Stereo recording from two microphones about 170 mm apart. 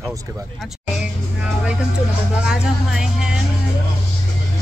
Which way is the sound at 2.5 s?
5° right (ahead or behind).